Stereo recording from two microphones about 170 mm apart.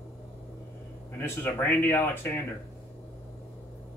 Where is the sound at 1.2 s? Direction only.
15° left (ahead or behind).